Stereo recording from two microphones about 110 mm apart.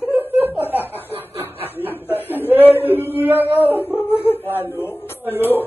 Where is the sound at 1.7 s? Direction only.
20° left (ahead or behind).